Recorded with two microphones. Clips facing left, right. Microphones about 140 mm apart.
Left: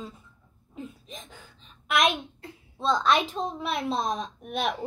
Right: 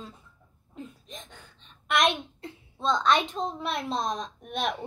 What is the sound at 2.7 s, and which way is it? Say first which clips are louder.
A child's voice: left 1 dB; centre (ahead or behind).